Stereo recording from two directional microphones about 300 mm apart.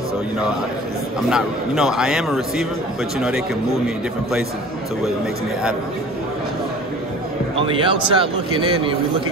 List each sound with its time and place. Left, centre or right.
1.3 s a man's voice: centre
7.5 s a man's voice: centre